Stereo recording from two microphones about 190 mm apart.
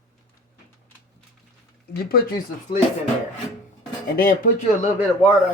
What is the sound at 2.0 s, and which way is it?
Speech, 55° left (ahead or behind).